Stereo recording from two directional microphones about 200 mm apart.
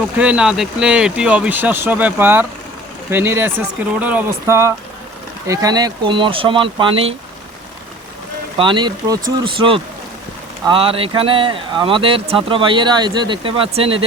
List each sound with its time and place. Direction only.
0.2 s speech: 5° right (ahead or behind); by 7.1 s 25° right (ahead or behind)
8.5 s speech: 25° right (ahead or behind)